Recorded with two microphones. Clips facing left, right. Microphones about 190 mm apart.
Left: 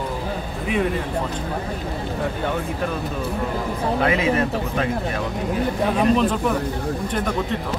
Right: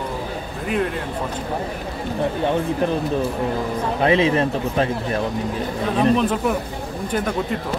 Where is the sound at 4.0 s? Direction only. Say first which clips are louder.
Right 4 dB; 25° right (ahead or behind).